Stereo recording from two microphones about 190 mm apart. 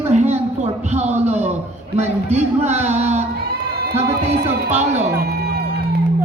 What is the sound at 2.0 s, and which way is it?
Speech, 35° right (ahead or behind).